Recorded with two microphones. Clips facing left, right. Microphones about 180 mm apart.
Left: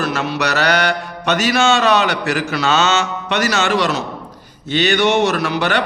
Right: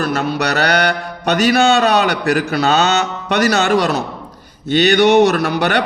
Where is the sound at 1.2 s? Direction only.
35° right (ahead or behind).